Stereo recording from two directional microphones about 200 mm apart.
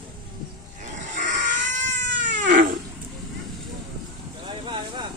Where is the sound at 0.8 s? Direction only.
40° right (ahead or behind).